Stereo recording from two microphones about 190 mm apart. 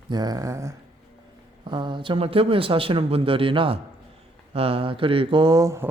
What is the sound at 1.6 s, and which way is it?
A man's voice, 25° right (ahead or behind).